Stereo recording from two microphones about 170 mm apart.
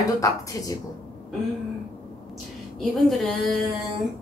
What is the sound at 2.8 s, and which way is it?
Speech, centre (ahead or behind).